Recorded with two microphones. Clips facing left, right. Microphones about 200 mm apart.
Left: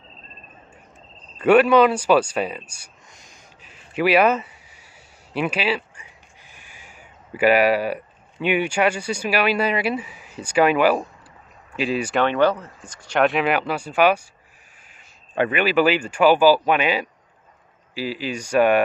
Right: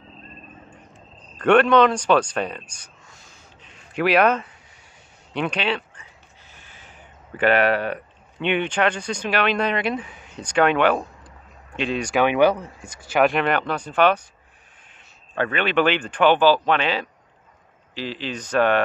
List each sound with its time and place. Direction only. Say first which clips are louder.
1.4 s speech: left 1 dB; 5° left (ahead or behind)
3.6 s a sound: left 1 dB; 5° left (ahead or behind)
5.3 s speech: left 1 dB; 5° left (ahead or behind)
12.2 s speech: right 2 dB; 10° right (ahead or behind); by 14.2 s 10° left (ahead or behind)
15.3 s speech: left 2 dB; 15° left (ahead or behind)